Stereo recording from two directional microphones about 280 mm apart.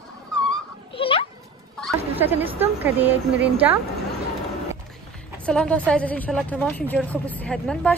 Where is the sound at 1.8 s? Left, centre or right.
Centre.